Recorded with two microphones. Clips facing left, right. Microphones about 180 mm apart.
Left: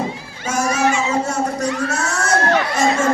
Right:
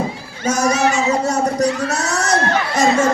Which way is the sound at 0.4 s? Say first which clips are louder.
Right 2 dB; 40° right (ahead or behind).